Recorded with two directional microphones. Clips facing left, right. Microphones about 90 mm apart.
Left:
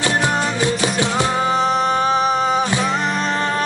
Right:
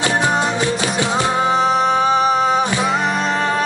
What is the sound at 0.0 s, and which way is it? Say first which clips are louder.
Music: right 2 dB; 20° right (ahead or behind).